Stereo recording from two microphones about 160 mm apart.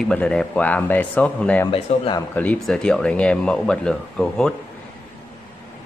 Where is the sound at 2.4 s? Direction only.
5° left (ahead or behind).